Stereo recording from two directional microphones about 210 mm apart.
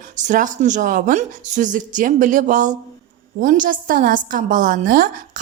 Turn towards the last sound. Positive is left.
turn(degrees=-40)  # may be behind; listen again after turning